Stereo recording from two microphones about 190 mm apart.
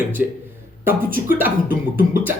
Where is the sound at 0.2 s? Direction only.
5° right (ahead or behind).